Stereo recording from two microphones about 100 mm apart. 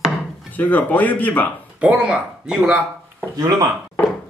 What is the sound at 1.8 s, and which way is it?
Speech, 10° right (ahead or behind).